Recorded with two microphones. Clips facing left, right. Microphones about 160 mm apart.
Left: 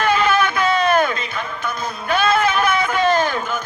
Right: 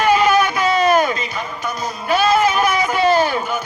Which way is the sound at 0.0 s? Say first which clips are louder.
Right 3 dB; 10° right (ahead or behind).